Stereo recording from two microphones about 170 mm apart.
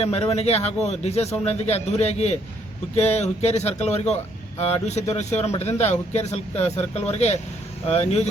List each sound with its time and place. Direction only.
0.0 s a man's voice: 40° left (ahead or behind)